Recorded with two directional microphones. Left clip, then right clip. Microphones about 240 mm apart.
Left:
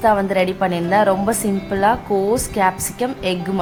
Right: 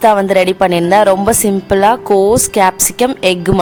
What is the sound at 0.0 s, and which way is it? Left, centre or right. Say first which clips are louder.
A woman's voice: right 7 dB; right.